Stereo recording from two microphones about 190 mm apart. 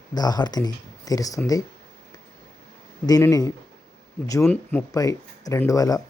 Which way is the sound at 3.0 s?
20° left (ahead or behind).